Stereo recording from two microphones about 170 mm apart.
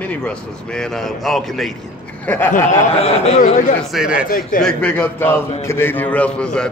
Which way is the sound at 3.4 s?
50° left (ahead or behind).